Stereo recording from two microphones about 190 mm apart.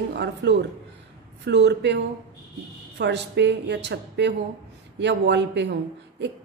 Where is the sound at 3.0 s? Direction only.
65° right (ahead or behind).